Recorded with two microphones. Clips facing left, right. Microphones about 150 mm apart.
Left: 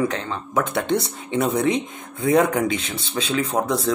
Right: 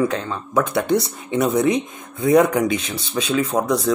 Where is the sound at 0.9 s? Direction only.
25° left (ahead or behind).